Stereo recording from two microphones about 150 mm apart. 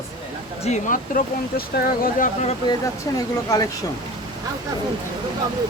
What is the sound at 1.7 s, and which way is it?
Speech, 70° left (ahead or behind).